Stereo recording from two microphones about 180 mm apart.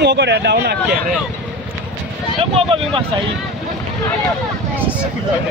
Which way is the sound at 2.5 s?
30° right (ahead or behind).